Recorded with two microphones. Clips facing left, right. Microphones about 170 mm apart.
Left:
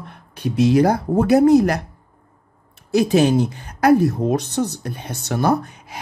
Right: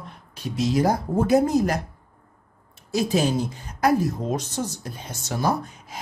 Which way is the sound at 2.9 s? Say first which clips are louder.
Left 7 dB; 65° left (ahead or behind).